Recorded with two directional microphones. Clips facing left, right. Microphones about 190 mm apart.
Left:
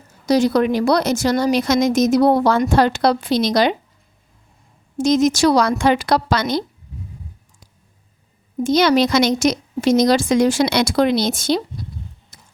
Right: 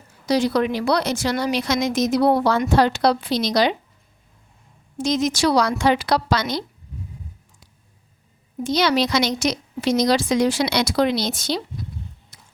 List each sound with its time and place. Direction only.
0.3 s speech: 45° left (ahead or behind)
4.9 s speech: 45° left (ahead or behind)
8.6 s speech: 45° left (ahead or behind)
12.3 s a sound: 45° left (ahead or behind)